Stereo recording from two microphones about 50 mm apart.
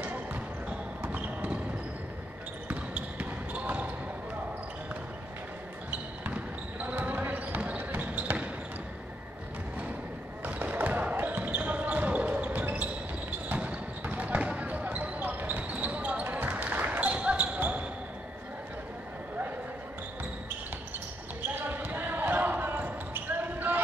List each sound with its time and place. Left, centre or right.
0.0 s basketball bounce: right
2.7 s basketball bounce: right
6.3 s basketball bounce: right
10.4 s basketball bounce: right
17.1 s basketball bounce: right
21.5 s basketball bounce: right